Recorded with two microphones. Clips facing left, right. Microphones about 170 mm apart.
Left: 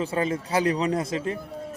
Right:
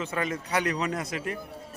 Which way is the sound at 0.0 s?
30° left (ahead or behind).